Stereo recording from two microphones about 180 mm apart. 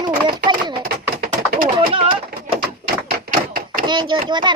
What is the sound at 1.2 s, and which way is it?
Bird, 55° right (ahead or behind).